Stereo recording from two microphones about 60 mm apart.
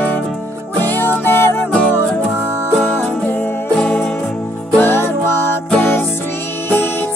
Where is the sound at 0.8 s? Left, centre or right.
Left.